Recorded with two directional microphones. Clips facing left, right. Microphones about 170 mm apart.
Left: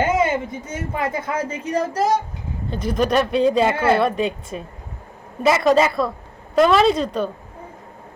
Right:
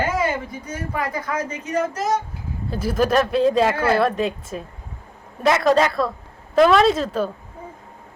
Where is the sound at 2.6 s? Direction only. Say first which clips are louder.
Even; 5° right (ahead or behind).